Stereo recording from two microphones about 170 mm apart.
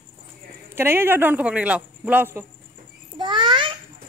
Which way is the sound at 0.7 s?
15° right (ahead or behind).